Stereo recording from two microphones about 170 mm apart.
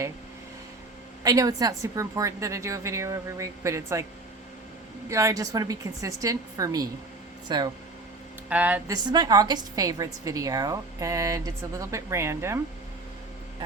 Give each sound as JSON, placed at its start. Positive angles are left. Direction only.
{"t": 1.2, "sound": "a woman's voice", "side_deg": -20}
{"t": 5.0, "sound": "a woman's voice", "side_deg": -20}
{"t": 8.4, "sound": "speech", "side_deg": -10}
{"t": 8.9, "sound": "a woman's voice", "side_deg": -25}